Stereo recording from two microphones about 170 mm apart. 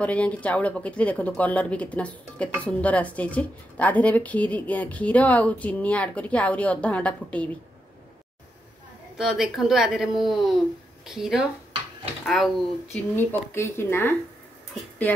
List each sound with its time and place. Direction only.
0.0 s speech: 10° left (ahead or behind)
9.2 s a woman's voice: 5° right (ahead or behind)
13.1 s speech: 15° left (ahead or behind)